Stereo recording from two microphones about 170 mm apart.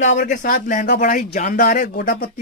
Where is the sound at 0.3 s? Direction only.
55° left (ahead or behind).